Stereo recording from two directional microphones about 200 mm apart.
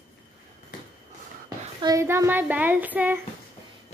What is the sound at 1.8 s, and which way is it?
Child singing, 15° right (ahead or behind).